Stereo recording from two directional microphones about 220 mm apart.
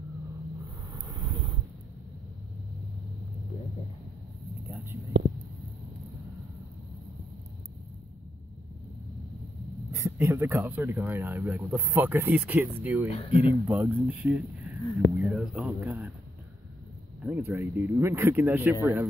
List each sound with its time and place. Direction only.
0.9 s vehicle: 20° right (ahead or behind)
10.1 s speech: 10° right (ahead or behind)
13.1 s speech: 25° left (ahead or behind)
13.7 s speech: 5° right (ahead or behind)
17.2 s speech: 10° right (ahead or behind)